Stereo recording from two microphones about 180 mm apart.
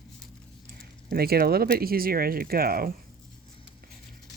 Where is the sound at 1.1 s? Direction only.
60° right (ahead or behind).